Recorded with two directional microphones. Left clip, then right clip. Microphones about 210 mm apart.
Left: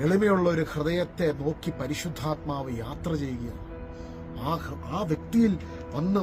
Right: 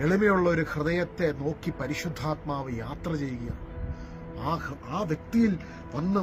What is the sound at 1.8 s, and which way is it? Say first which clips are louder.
Speech: even; 5° left (ahead or behind).